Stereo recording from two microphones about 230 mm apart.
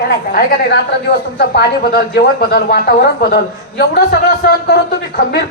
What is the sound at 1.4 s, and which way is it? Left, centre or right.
A man's voice, left.